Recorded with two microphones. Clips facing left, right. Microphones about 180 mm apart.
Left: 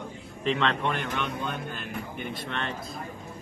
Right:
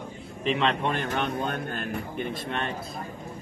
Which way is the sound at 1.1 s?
45° right (ahead or behind).